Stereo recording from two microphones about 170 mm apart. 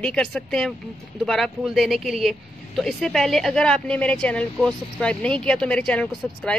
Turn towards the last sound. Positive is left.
turn(degrees=5)  # may be behind; listen again after turning